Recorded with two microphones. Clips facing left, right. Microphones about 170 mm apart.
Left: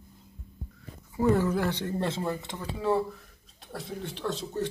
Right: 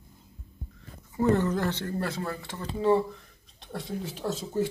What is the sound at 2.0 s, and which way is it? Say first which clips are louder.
Speech: left 2 dB; 25° left (ahead or behind).